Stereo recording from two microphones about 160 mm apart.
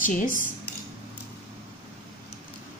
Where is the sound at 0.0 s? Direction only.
55° left (ahead or behind).